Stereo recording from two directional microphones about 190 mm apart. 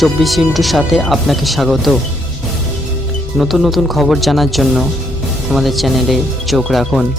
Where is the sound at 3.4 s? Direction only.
Centre (ahead or behind).